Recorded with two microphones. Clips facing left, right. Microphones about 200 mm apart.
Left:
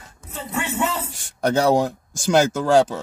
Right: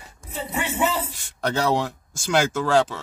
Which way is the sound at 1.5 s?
45° left (ahead or behind).